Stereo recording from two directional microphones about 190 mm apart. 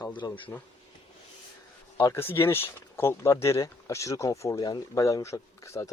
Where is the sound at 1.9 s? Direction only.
15° left (ahead or behind).